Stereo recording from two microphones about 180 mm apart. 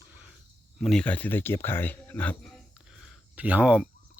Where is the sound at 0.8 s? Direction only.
5° left (ahead or behind).